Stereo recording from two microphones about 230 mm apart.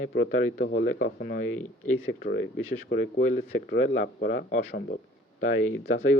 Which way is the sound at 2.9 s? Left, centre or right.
Left.